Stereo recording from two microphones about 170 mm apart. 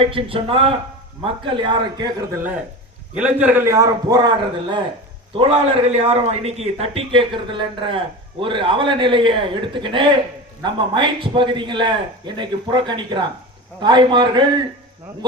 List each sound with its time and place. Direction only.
0.0 s a man's voice: 30° right (ahead or behind)
3.2 s a man's voice: 10° right (ahead or behind); by 14.4 s 25° right (ahead or behind)